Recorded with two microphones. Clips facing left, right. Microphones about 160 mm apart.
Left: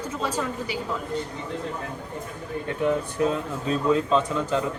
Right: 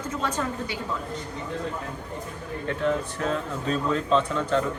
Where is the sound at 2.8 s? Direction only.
10° left (ahead or behind).